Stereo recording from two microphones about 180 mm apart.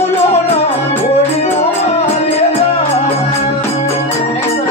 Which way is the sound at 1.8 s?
35° left (ahead or behind).